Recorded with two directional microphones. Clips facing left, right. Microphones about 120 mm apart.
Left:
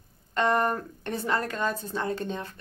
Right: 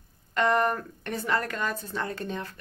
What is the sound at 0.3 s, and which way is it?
A woman's voice, 25° left (ahead or behind).